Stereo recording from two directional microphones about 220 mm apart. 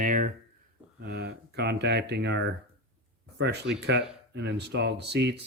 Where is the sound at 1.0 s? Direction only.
50° right (ahead or behind).